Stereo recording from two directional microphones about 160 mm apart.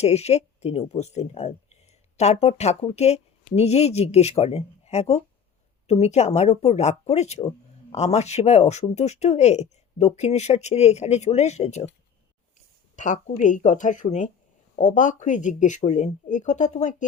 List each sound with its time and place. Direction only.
0.0 s speech: 40° left (ahead or behind)
13.0 s speech: 50° left (ahead or behind)